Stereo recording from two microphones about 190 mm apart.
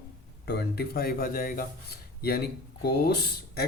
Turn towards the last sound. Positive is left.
turn(degrees=55)  # may be behind; listen again after turning